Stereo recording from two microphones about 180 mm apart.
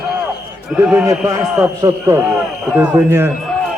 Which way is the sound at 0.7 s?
5° right (ahead or behind).